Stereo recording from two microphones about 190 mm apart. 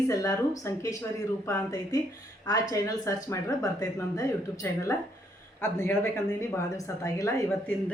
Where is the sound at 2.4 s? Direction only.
20° left (ahead or behind).